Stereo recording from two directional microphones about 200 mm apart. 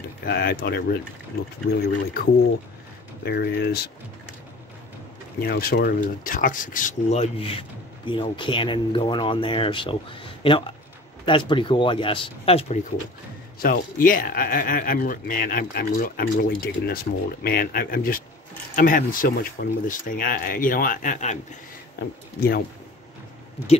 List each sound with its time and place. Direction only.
0.2 s speech: 50° left (ahead or behind)
3.3 s speech: 55° left (ahead or behind)
5.4 s speech: 50° left (ahead or behind); by 9.9 s 25° left (ahead or behind)
11.2 s speech: 25° left (ahead or behind)
13.6 s speech: 45° left (ahead or behind)